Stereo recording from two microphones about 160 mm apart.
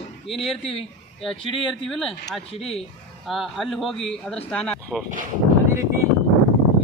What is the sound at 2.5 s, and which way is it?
Speech, 40° left (ahead or behind).